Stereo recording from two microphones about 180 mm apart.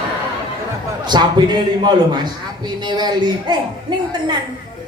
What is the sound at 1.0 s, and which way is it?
A woman's voice, 25° right (ahead or behind).